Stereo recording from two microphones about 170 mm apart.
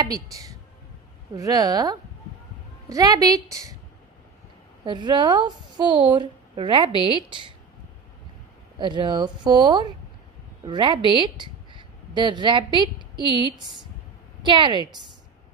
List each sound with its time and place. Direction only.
0.0 s a woman's voice: 20° right (ahead or behind)
4.8 s a woman's voice: 25° right (ahead or behind)
8.7 s a woman's voice: 25° right (ahead or behind)